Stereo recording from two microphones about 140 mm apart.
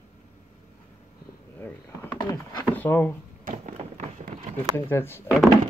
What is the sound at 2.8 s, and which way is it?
Speech, 15° left (ahead or behind).